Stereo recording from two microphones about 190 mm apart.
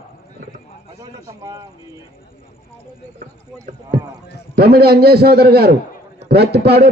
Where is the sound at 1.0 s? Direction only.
20° right (ahead or behind).